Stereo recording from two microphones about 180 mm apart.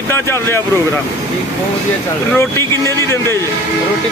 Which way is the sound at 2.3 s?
15° left (ahead or behind).